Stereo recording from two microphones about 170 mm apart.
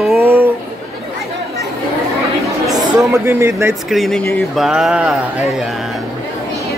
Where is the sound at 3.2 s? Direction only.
15° right (ahead or behind).